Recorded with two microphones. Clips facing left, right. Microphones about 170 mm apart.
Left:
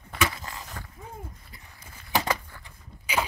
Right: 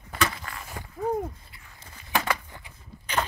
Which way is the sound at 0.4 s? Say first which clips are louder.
Even; 20° left (ahead or behind).